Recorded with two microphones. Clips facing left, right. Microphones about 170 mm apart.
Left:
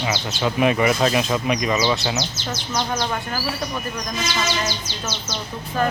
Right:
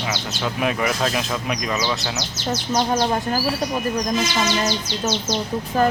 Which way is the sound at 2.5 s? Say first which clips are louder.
Right 7 dB; 35° right (ahead or behind).